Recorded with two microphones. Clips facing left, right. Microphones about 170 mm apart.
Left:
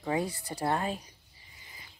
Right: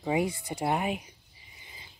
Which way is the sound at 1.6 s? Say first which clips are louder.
Right 2 dB; 20° right (ahead or behind).